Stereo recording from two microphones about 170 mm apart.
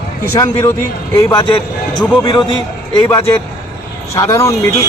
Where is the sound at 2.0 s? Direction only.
25° left (ahead or behind).